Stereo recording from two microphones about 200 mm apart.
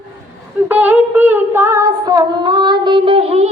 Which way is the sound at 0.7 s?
10° right (ahead or behind).